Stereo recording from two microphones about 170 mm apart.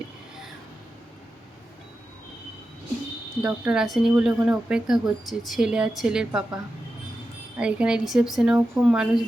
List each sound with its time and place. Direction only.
3.4 s speech: 5° right (ahead or behind)
7.6 s speech: 5° right (ahead or behind)